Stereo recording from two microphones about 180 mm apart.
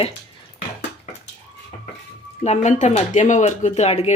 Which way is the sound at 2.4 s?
40° left (ahead or behind).